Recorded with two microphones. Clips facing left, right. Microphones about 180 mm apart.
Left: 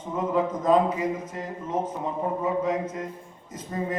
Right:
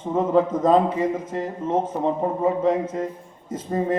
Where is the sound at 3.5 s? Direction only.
30° right (ahead or behind).